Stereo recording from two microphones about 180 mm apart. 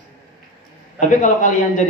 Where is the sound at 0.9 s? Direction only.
45° left (ahead or behind).